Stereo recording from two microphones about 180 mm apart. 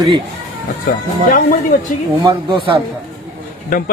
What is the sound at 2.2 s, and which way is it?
Speech, 25° right (ahead or behind).